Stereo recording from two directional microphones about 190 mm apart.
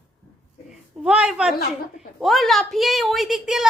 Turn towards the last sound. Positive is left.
turn(degrees=0)  # may be behind; listen again after turning